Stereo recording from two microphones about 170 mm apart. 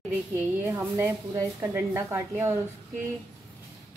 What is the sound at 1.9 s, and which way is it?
Speech, 15° right (ahead or behind).